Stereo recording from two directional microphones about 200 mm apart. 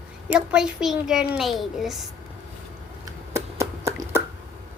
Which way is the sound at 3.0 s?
15° right (ahead or behind).